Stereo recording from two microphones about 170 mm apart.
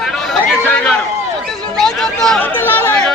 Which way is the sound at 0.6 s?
5° left (ahead or behind).